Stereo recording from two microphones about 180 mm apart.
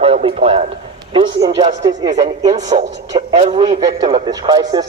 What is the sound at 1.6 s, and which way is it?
Speech, 25° right (ahead or behind).